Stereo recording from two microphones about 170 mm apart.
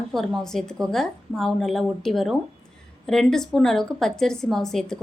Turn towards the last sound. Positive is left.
turn(degrees=5)  # may be behind; listen again after turning